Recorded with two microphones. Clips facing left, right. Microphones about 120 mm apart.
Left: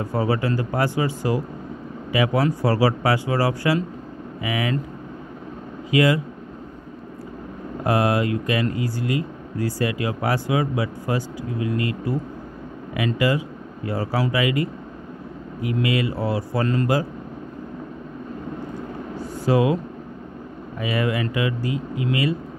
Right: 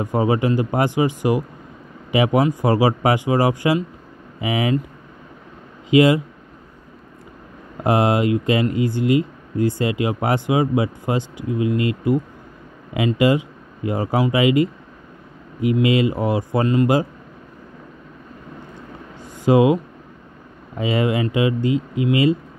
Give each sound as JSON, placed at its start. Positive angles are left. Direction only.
{"t": 0.0, "sound": "speech", "side_deg": -15}
{"t": 5.9, "sound": "speech", "side_deg": -20}
{"t": 7.8, "sound": "speech", "side_deg": -20}
{"t": 19.1, "sound": "a sound", "side_deg": -20}
{"t": 20.7, "sound": "speech", "side_deg": -25}